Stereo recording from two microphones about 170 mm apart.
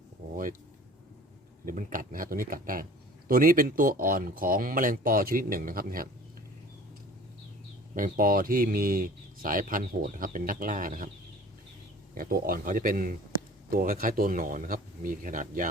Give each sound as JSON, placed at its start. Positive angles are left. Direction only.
{"t": 1.6, "sound": "speech", "side_deg": -55}
{"t": 7.9, "sound": "speech", "side_deg": -55}
{"t": 12.1, "sound": "speech", "side_deg": -60}